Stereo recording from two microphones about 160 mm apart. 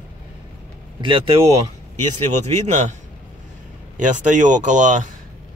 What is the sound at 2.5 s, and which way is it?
Speech, 45° right (ahead or behind).